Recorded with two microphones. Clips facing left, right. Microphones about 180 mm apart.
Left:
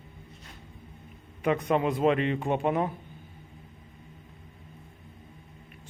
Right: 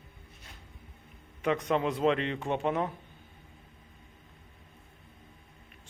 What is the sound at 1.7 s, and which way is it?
A man's voice, 10° left (ahead or behind).